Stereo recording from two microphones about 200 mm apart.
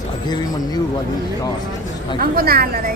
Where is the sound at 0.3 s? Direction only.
20° left (ahead or behind).